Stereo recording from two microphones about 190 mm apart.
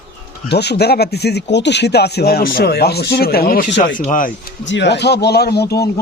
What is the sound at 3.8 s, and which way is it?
Speech, 45° left (ahead or behind).